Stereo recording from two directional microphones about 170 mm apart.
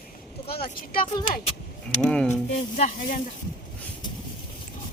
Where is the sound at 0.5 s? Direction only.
60° left (ahead or behind).